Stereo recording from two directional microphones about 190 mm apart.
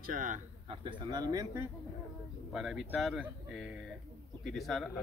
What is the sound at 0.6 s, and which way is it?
Speech, 25° right (ahead or behind).